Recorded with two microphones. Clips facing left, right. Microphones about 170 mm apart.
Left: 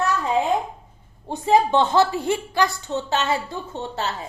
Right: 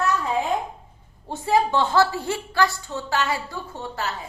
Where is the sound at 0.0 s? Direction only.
25° left (ahead or behind).